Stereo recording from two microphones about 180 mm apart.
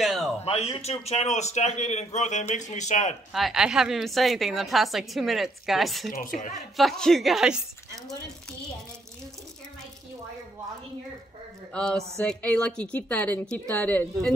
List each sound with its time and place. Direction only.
0.0 s a sound: centre (ahead or behind)
0.5 s a man's voice: 35° left (ahead or behind)
3.3 s a woman's voice: centre (ahead or behind)
6.1 s a woman's voice: 45° left (ahead or behind)
6.8 s a woman's voice: centre (ahead or behind)
11.7 s a woman's voice: 5° left (ahead or behind)